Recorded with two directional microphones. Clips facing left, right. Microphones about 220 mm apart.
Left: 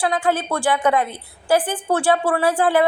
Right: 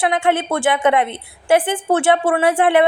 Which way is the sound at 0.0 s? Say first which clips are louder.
Right 3 dB; 25° right (ahead or behind).